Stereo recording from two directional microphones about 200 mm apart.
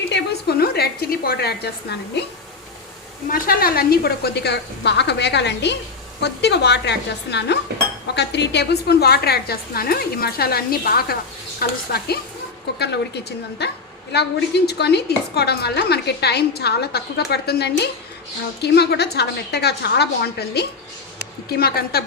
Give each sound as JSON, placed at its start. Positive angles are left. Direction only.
{"t": 0.1, "sound": "a woman's voice", "side_deg": 55}
{"t": 3.2, "sound": "a woman's voice", "side_deg": 45}
{"t": 14.7, "sound": "a woman's voice", "side_deg": 55}